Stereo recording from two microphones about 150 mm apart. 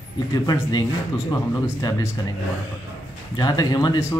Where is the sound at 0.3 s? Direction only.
25° left (ahead or behind).